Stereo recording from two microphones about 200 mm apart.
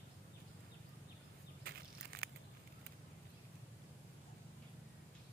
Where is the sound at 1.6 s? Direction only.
50° right (ahead or behind).